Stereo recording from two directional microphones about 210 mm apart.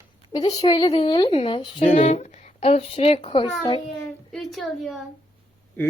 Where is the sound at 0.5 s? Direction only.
25° left (ahead or behind).